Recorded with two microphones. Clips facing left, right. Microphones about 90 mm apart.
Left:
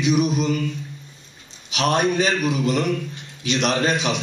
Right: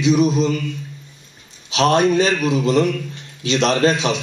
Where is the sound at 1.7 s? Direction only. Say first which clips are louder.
Right 5 dB; 35° right (ahead or behind).